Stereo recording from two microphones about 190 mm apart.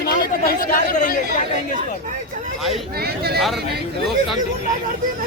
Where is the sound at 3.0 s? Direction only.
55° right (ahead or behind).